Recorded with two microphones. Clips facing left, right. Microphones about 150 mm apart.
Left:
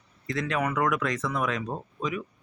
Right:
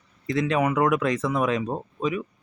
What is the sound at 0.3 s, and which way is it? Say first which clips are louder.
Speech: right 5 dB; 20° right (ahead or behind).